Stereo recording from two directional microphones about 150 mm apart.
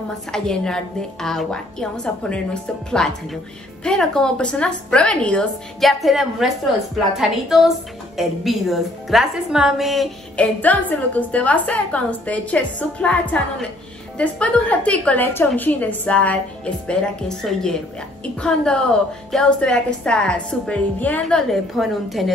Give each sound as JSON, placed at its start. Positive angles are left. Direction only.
{"t": 0.3, "sound": "a woman's voice", "side_deg": 5}